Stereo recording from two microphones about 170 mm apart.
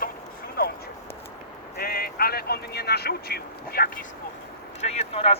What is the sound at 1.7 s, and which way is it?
Speech, 60° left (ahead or behind).